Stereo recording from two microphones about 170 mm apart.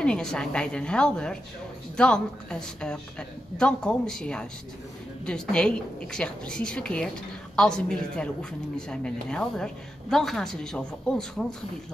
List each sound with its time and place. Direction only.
0.0 s a woman's voice: 5° left (ahead or behind)